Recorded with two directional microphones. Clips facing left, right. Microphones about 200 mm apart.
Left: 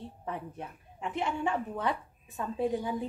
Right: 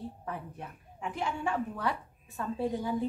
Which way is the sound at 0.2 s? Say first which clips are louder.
Left 2 dB; 20° left (ahead or behind).